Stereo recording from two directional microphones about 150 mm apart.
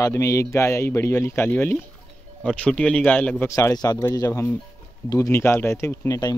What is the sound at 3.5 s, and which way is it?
Speech, 25° left (ahead or behind).